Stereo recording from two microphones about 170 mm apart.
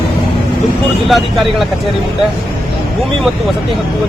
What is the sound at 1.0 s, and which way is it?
Speech, centre (ahead or behind).